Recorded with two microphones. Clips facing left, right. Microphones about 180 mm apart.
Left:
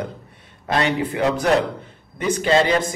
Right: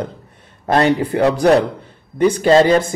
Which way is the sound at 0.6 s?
45° right (ahead or behind).